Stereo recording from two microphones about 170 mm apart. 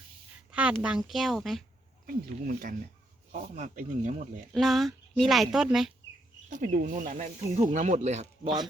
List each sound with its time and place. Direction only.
0.5 s speech: 5° right (ahead or behind)
2.0 s speech: 55° right (ahead or behind)
4.5 s speech: centre (ahead or behind)
6.5 s speech: 50° right (ahead or behind)